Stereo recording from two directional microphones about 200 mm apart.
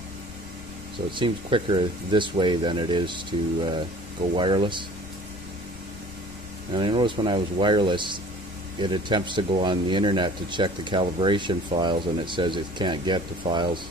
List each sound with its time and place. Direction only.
1.1 s speech: 25° right (ahead or behind)
6.7 s speech: 25° right (ahead or behind)